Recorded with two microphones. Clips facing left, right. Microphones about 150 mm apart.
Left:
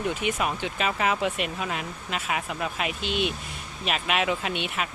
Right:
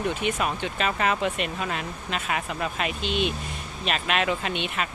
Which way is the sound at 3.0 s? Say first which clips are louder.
Right 1 dB; 55° left (ahead or behind).